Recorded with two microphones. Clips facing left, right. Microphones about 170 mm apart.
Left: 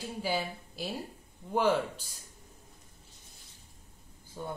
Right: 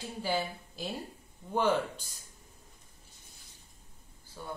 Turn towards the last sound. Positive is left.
turn(degrees=20)  # may be behind; listen again after turning